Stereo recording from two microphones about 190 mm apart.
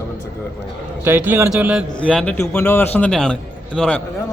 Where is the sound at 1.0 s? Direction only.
10° right (ahead or behind).